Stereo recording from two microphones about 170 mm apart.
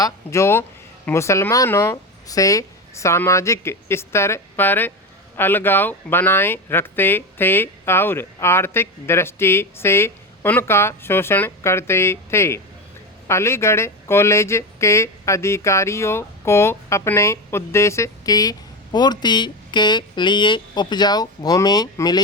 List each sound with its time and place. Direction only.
0.0 s speech: 15° left (ahead or behind)